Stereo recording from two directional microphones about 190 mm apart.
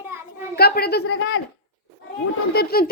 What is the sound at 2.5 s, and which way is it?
Speech, 55° left (ahead or behind).